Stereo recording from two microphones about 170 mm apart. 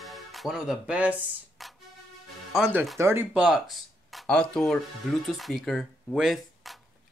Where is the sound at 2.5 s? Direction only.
5° right (ahead or behind).